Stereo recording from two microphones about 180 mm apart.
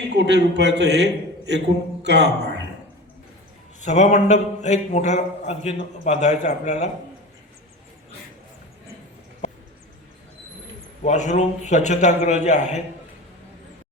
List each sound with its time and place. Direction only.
0.2 s a man's voice: 70° right (ahead or behind)
3.8 s a man's voice: 40° left (ahead or behind)
11.0 s a man's voice: 40° left (ahead or behind)